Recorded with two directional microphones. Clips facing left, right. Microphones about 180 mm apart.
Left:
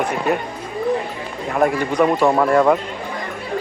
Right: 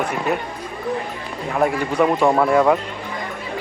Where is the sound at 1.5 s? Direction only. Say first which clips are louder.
Left 2 dB; centre (ahead or behind).